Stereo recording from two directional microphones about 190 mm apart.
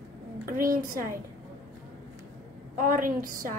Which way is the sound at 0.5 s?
50° right (ahead or behind).